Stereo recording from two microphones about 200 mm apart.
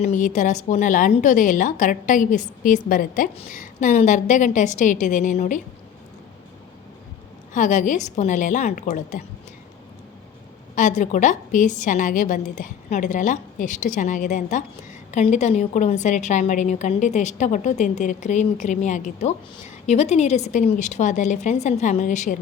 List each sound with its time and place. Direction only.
0.0 s a woman's voice: 40° left (ahead or behind)
7.5 s a woman's voice: 40° left (ahead or behind)
10.8 s a woman's voice: 40° left (ahead or behind)